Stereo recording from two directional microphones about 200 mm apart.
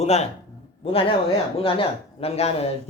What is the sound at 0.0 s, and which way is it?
Speech, 35° left (ahead or behind).